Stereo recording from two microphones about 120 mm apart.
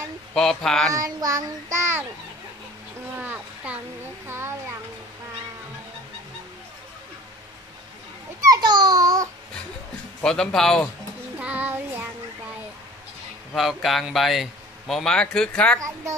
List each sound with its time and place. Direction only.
0.3 s a man's voice: 5° left (ahead or behind)
0.9 s child singing: 25° right (ahead or behind)
3.2 s speech: 10° right (ahead or behind)
4.3 s child singing: 20° right (ahead or behind)
8.4 s speech: 35° right (ahead or behind)
10.2 s a man's voice: 5° left (ahead or behind)
11.3 s child singing: 10° right (ahead or behind)
13.6 s a man's voice: centre (ahead or behind)